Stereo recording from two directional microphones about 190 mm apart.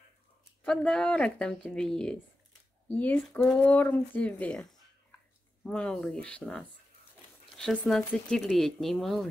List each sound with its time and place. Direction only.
0.7 s speech: 5° left (ahead or behind)